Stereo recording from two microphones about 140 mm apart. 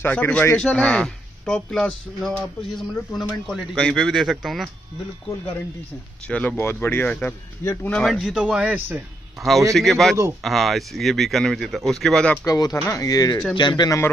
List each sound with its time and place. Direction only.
0.0 s speech: 15° left (ahead or behind)
6.2 s speech: 10° left (ahead or behind)
7.6 s speech: 20° left (ahead or behind)
7.9 s speech: centre (ahead or behind); by 9.0 s 15° right (ahead or behind)
9.8 s speech: centre (ahead or behind)
12.4 s speech: 25° left (ahead or behind)